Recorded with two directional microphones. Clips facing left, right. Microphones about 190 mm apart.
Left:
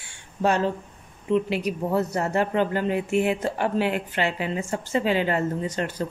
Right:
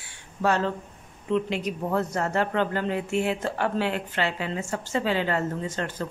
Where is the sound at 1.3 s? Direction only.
10° left (ahead or behind).